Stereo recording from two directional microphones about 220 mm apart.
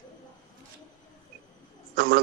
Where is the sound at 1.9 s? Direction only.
45° right (ahead or behind).